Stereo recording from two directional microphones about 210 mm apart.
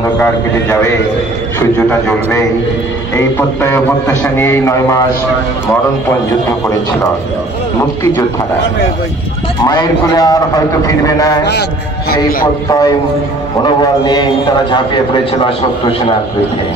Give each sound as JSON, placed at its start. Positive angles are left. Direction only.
{"t": 0.2, "sound": "a man's voice", "side_deg": 10}
{"t": 9.6, "sound": "a man's voice", "side_deg": 20}
{"t": 12.6, "sound": "a man's voice", "side_deg": 20}